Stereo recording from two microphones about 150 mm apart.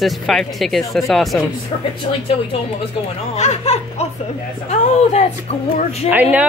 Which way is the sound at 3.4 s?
45° left (ahead or behind).